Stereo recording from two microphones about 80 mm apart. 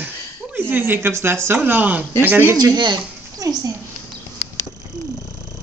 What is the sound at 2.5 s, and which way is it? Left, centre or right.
Speech, right.